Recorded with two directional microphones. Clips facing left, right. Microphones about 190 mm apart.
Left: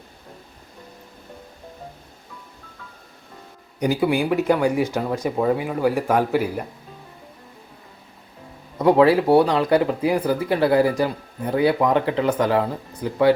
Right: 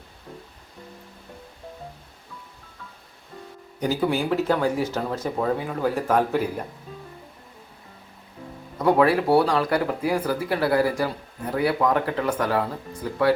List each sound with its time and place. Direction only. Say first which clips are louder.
3.8 s speech: left 3 dB; 15° left (ahead or behind)
8.8 s speech: left 4 dB; 25° left (ahead or behind)